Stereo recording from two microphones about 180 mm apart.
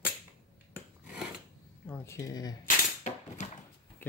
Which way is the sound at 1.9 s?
15° left (ahead or behind).